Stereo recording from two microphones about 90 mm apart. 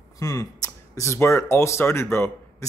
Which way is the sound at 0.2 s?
40° left (ahead or behind).